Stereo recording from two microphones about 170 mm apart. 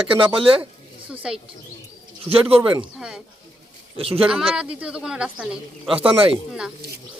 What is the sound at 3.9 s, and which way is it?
Speech, 35° right (ahead or behind).